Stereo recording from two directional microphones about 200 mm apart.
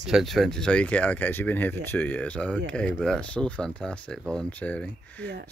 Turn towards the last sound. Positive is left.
turn(degrees=5)  # may be behind; listen again after turning